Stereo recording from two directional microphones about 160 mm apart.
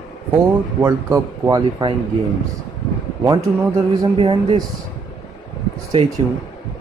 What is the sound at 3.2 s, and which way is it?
Speech, 20° right (ahead or behind).